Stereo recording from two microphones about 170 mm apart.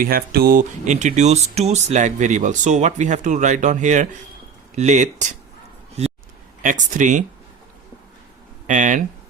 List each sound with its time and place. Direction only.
0.0 s speech: 60° right (ahead or behind)
0.9 s speech: 45° right (ahead or behind)
6.6 s speech: 50° right (ahead or behind)
8.6 s speech: 45° right (ahead or behind)